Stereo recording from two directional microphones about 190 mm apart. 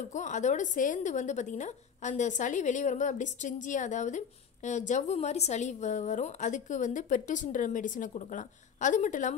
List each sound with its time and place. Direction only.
0.1 s a woman's voice: 40° left (ahead or behind)